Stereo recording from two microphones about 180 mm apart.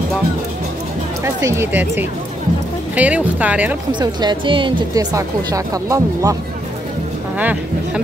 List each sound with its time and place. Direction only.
1.2 s speech: 15° right (ahead or behind)
4.0 s speech: 25° right (ahead or behind)
7.3 s a sound: 10° right (ahead or behind)